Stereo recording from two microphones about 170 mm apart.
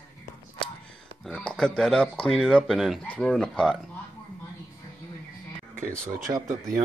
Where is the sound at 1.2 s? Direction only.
5° left (ahead or behind).